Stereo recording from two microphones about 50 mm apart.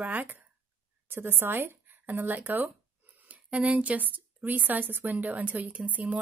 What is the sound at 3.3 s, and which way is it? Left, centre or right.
A woman's voice, right.